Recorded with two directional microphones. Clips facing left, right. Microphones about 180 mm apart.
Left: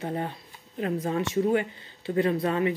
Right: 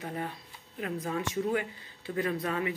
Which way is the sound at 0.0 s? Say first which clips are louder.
Left 5 dB; 30° left (ahead or behind).